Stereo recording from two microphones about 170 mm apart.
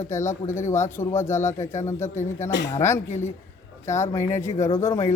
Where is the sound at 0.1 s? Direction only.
15° left (ahead or behind).